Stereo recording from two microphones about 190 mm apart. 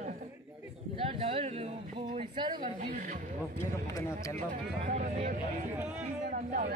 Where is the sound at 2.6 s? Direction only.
45° right (ahead or behind).